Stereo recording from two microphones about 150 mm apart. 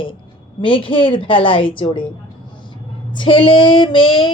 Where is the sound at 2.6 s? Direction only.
30° left (ahead or behind).